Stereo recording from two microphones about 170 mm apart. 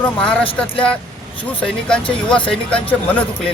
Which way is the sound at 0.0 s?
5° left (ahead or behind).